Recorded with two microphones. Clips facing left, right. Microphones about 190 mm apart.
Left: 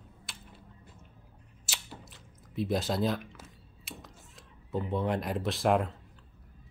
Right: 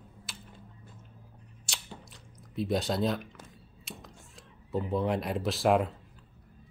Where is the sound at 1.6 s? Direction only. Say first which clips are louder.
Even; centre (ahead or behind).